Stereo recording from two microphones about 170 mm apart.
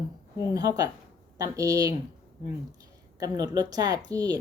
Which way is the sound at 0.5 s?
20° right (ahead or behind).